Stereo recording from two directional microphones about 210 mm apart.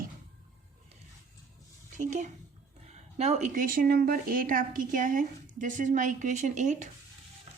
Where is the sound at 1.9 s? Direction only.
35° right (ahead or behind).